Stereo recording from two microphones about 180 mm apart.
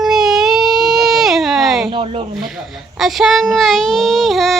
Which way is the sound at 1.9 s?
30° right (ahead or behind).